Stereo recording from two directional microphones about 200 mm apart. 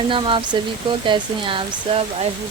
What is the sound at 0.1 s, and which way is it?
Speech, 25° right (ahead or behind).